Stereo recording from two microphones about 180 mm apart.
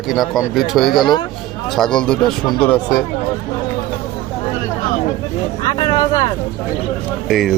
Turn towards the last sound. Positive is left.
turn(degrees=0)  # may be behind; listen again after turning